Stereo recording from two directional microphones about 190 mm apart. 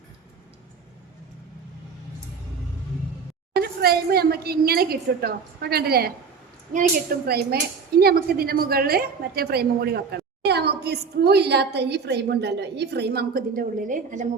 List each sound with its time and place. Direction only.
3.6 s a woman's voice: 55° right (ahead or behind)
7.3 s a woman's voice: 55° right (ahead or behind)